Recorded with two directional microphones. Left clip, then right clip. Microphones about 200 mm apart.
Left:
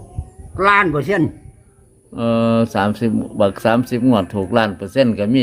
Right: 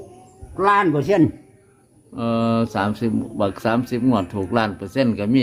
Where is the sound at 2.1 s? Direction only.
25° left (ahead or behind).